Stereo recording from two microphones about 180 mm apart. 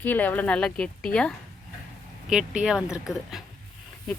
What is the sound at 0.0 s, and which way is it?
Speech, 10° left (ahead or behind).